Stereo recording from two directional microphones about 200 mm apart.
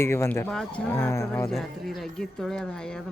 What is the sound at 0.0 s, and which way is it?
Speech, 10° left (ahead or behind).